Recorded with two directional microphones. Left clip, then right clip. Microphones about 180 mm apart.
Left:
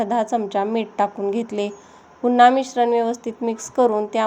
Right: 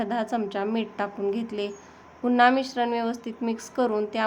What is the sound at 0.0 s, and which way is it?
A woman's voice, 15° left (ahead or behind).